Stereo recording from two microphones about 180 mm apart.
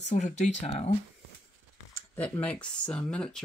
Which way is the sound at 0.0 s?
40° left (ahead or behind).